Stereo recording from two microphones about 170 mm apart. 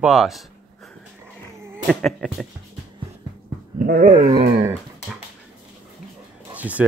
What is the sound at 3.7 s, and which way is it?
Speech, 55° right (ahead or behind).